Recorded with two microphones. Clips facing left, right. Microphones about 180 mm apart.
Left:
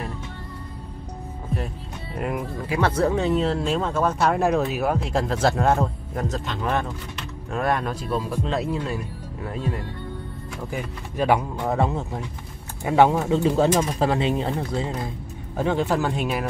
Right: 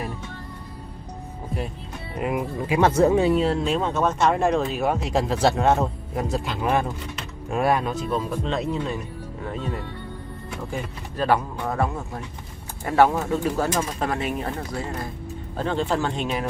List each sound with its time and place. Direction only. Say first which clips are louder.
2.1 s speech: right 2 dB; 5° right (ahead or behind)
10.7 s speech: left 2 dB; 15° left (ahead or behind)
15.5 s speech: left 2 dB; 10° left (ahead or behind)